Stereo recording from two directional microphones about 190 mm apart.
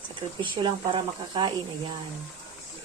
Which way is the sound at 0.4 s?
25° right (ahead or behind).